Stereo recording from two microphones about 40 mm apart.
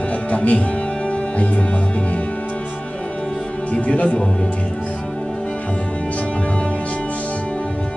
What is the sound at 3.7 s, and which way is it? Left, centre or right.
Speech, left.